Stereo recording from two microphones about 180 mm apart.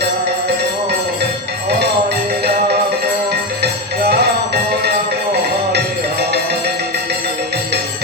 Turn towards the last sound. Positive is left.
turn(degrees=-65)  # may be behind; listen again after turning